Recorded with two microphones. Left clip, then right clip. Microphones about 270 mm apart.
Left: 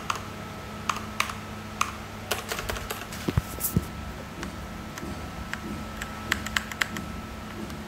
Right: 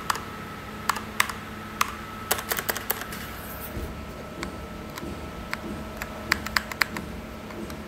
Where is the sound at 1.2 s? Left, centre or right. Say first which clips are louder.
Right 3 dB; right.